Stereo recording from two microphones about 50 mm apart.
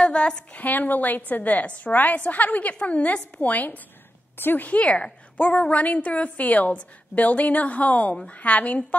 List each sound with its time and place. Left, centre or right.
0.0 s a sound: centre
0.5 s a woman's voice: left
4.4 s a woman's voice: left
4.6 s a woman's voice: left